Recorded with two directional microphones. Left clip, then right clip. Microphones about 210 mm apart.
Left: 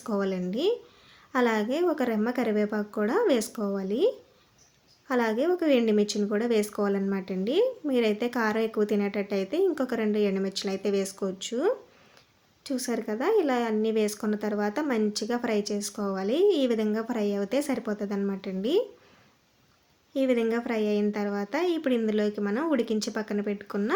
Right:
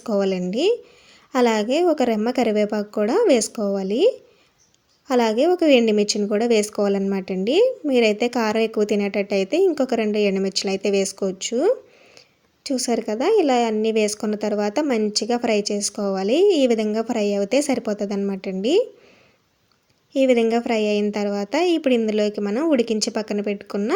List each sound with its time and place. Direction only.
0.0 s a woman's voice: 30° right (ahead or behind)
20.1 s a woman's voice: 30° right (ahead or behind)